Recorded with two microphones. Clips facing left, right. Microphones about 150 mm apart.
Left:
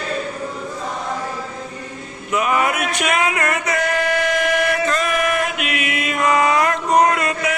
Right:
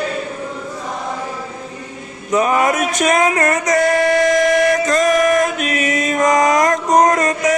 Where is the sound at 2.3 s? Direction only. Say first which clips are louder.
Right 4 dB; 40° right (ahead or behind).